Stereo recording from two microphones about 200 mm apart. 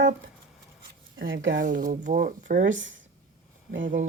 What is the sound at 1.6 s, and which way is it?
Speech, 40° right (ahead or behind).